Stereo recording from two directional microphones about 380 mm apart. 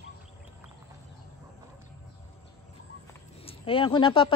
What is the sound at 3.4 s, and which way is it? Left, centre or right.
Speech, centre.